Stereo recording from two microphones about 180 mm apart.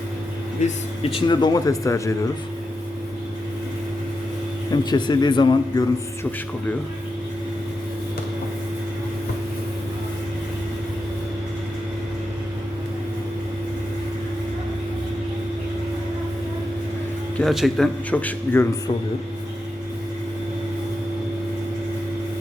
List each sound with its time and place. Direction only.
0.6 s speech: 40° left (ahead or behind)
1.1 s speech: 25° left (ahead or behind)
4.7 s speech: 25° left (ahead or behind)
17.3 s a man's voice: centre (ahead or behind)